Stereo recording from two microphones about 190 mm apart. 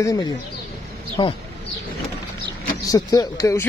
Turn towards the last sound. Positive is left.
turn(degrees=15)  # may be behind; listen again after turning